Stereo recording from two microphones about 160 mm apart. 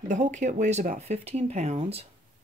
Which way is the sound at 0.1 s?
50° right (ahead or behind).